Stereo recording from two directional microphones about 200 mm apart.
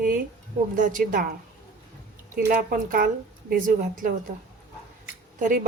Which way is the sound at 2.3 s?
45° right (ahead or behind).